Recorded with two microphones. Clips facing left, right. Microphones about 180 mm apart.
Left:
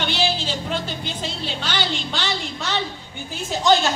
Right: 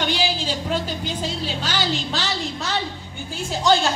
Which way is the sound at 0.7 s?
40° right (ahead or behind).